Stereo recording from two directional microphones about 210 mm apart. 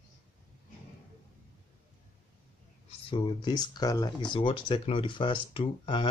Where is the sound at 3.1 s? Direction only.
20° left (ahead or behind).